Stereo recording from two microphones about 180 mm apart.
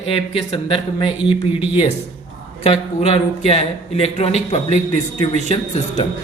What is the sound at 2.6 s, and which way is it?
Speech, 35° left (ahead or behind).